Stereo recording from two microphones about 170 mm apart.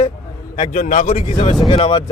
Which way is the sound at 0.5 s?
45° left (ahead or behind).